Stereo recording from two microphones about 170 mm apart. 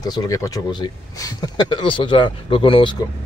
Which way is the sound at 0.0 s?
25° left (ahead or behind).